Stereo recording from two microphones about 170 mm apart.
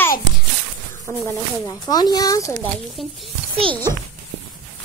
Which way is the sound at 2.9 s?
Centre (ahead or behind).